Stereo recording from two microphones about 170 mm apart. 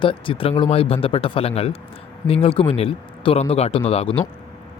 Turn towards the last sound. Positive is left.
turn(degrees=35)  # may be behind; listen again after turning